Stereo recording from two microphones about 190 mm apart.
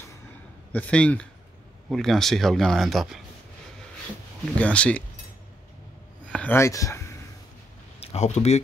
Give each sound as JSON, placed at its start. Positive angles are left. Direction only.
{"t": 0.7, "sound": "speech", "side_deg": 5}
{"t": 4.6, "sound": "speech", "side_deg": 5}
{"t": 6.2, "sound": "a sound", "side_deg": 5}
{"t": 8.0, "sound": "speech", "side_deg": 35}